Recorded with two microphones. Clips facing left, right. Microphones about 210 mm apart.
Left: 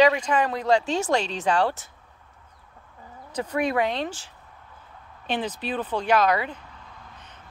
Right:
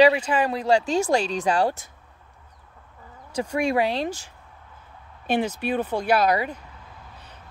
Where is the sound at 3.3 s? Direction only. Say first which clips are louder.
Right 2 dB; 10° right (ahead or behind).